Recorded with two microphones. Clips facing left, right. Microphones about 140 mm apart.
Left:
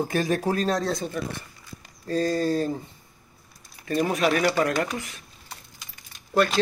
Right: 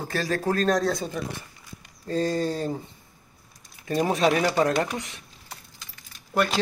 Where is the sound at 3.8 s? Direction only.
20° right (ahead or behind).